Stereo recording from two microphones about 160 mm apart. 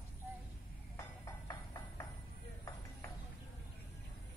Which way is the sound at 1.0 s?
20° left (ahead or behind).